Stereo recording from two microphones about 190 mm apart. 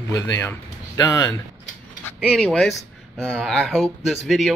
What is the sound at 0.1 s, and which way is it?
Speech, 15° left (ahead or behind).